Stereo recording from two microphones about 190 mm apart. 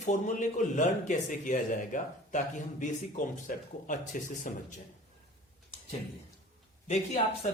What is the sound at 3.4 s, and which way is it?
Speech, 45° left (ahead or behind).